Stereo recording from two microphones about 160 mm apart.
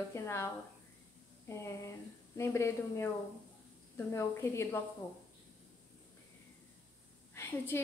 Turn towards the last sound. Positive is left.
turn(degrees=15)  # may be behind; listen again after turning